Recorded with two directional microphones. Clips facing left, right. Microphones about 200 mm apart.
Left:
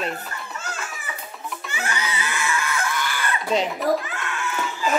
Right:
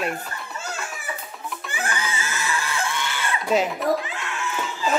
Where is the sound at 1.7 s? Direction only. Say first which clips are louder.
Even; 50° right (ahead or behind); by 3.3 s 25° right (ahead or behind).